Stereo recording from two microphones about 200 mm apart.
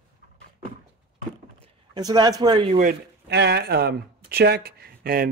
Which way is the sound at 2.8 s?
50° right (ahead or behind).